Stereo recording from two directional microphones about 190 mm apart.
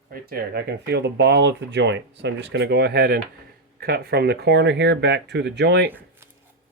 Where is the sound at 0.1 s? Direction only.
55° right (ahead or behind).